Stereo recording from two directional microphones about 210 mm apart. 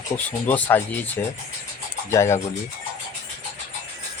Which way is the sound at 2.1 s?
15° left (ahead or behind).